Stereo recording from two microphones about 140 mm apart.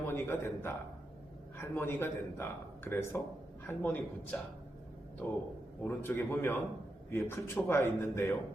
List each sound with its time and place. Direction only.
0.1 s a man's voice: 15° left (ahead or behind)